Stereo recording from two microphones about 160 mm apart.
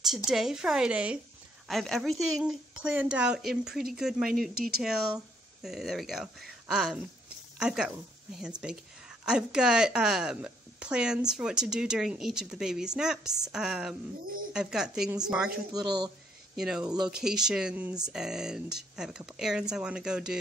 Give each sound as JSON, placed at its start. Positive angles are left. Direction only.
{"t": 0.3, "sound": "a woman's voice", "side_deg": -5}
{"t": 4.6, "sound": "speech", "side_deg": -75}
{"t": 4.8, "sound": "a woman's voice", "side_deg": -5}
{"t": 16.5, "sound": "a woman's voice", "side_deg": -5}